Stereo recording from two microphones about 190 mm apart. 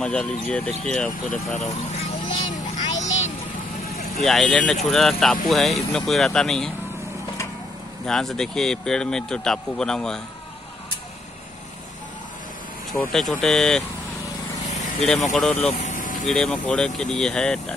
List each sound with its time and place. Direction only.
0.0 s speech: 5° left (ahead or behind)
1.3 s speech: 40° left (ahead or behind)
2.5 s music: 40° left (ahead or behind)
4.2 s speech: centre (ahead or behind)
8.1 s speech: centre (ahead or behind)
12.9 s speech: centre (ahead or behind)
14.7 s vehicle: 35° left (ahead or behind)
15.3 s speech: 5° left (ahead or behind)
15.8 s vehicle: 45° left (ahead or behind)
16.3 s speech: centre (ahead or behind)